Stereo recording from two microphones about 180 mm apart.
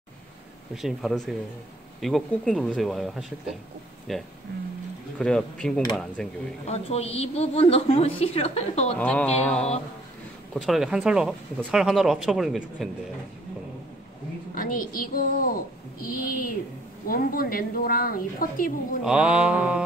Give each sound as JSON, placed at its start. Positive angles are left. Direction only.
{"t": 0.7, "sound": "speech", "side_deg": 0}
{"t": 6.6, "sound": "a woman's voice", "side_deg": 35}
{"t": 8.9, "sound": "speech", "side_deg": 5}
{"t": 14.5, "sound": "a woman's voice", "side_deg": 50}
{"t": 19.0, "sound": "speech", "side_deg": -5}